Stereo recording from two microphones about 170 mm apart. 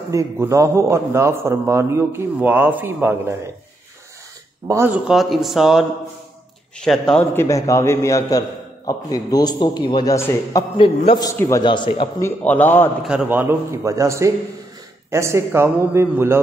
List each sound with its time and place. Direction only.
0.1 s a man's voice: 20° right (ahead or behind)
4.6 s speech: 15° right (ahead or behind); by 7.2 s 5° left (ahead or behind)
7.3 s a man's voice: 20° left (ahead or behind)
12.2 s a man's voice: 10° left (ahead or behind)
13.0 s a man's voice: 5° right (ahead or behind)